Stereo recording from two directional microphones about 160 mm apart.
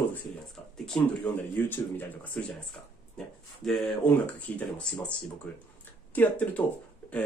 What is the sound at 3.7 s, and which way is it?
Speech, 5° left (ahead or behind).